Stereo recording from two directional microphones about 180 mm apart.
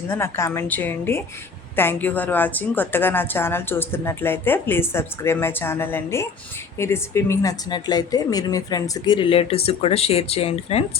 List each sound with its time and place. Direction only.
0.1 s a woman's voice: 15° left (ahead or behind); by 10.8 s 35° left (ahead or behind)